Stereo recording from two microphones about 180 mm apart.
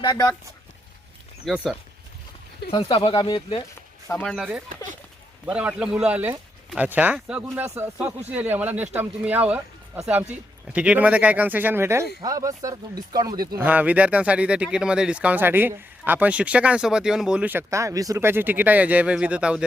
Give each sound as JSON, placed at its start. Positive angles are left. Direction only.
{"t": 0.0, "sound": "speech", "side_deg": 20}
{"t": 1.5, "sound": "speech", "side_deg": 0}
{"t": 2.6, "sound": "speech", "side_deg": 30}
{"t": 4.2, "sound": "speech", "side_deg": 5}
{"t": 5.5, "sound": "speech", "side_deg": -5}
{"t": 13.3, "sound": "speech", "side_deg": -55}
{"t": 13.6, "sound": "speech", "side_deg": -10}